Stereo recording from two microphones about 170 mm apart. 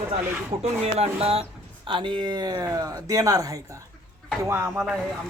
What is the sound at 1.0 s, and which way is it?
Speech, 35° right (ahead or behind).